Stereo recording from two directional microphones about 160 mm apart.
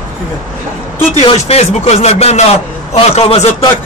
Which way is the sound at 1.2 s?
40° left (ahead or behind).